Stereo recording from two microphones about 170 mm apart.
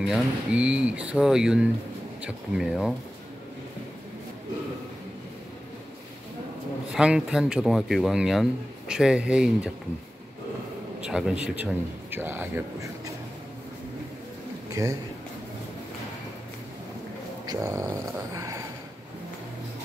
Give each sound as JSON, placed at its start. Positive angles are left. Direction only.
{"t": 0.0, "sound": "speech", "side_deg": -5}
{"t": 6.9, "sound": "speech", "side_deg": -5}
{"t": 11.1, "sound": "speech", "side_deg": -5}
{"t": 14.7, "sound": "speech", "side_deg": -20}
{"t": 17.5, "sound": "a sound", "side_deg": -20}